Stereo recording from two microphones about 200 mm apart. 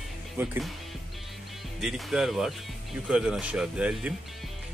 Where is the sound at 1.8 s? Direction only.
Centre (ahead or behind).